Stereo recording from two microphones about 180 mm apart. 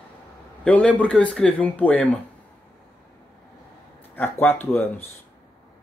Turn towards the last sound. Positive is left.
turn(degrees=10)  # may be behind; listen again after turning